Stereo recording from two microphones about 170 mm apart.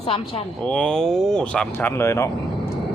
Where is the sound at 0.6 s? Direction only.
5° left (ahead or behind).